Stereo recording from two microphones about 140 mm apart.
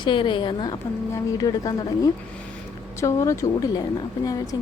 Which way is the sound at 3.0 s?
20° left (ahead or behind).